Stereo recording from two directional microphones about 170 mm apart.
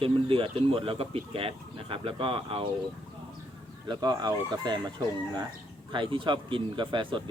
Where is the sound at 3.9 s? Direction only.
25° right (ahead or behind).